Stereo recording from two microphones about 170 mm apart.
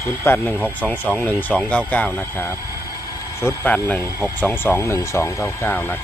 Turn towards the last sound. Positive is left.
turn(degrees=15)  # may be behind; listen again after turning